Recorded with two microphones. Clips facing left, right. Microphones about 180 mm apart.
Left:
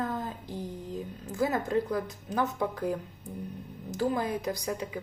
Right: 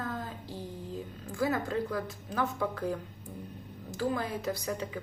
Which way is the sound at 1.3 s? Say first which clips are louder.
Left 2 dB; 20° left (ahead or behind).